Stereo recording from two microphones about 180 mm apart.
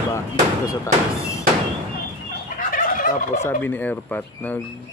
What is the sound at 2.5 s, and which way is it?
Fowl, 50° left (ahead or behind).